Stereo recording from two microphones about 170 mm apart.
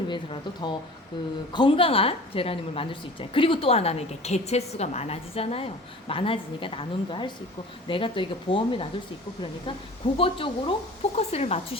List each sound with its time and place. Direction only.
0.1 s a woman's voice: 30° left (ahead or behind)
10.2 s a woman's voice: 30° left (ahead or behind)